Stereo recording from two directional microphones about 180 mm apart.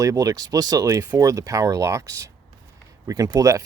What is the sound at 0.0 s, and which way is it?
Speech, 20° right (ahead or behind).